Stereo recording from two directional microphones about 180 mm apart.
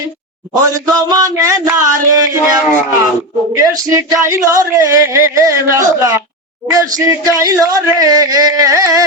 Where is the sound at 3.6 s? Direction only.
20° right (ahead or behind).